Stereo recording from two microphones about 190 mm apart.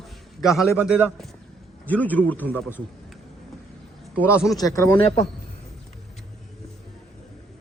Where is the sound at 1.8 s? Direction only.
10° left (ahead or behind).